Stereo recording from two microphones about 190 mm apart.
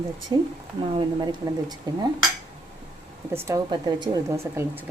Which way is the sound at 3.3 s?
15° right (ahead or behind).